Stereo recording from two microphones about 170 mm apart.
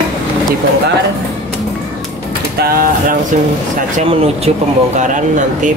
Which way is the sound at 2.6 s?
60° right (ahead or behind).